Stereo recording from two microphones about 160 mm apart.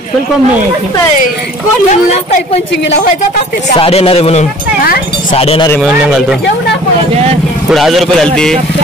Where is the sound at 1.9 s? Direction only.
50° left (ahead or behind).